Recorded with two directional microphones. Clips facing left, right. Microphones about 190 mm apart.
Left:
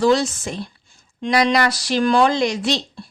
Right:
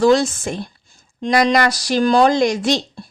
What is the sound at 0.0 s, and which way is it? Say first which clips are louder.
Speech: right 3 dB; 50° right (ahead or behind).